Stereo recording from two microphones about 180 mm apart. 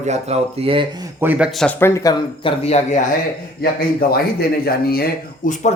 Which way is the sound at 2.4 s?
35° left (ahead or behind).